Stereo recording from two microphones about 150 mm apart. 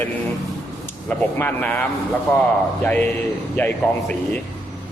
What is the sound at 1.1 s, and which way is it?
A man's voice, 10° left (ahead or behind).